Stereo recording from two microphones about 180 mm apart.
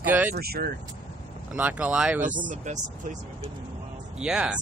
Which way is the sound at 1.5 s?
10° right (ahead or behind).